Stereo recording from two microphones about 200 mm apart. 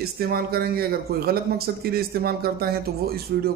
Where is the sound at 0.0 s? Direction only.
50° right (ahead or behind).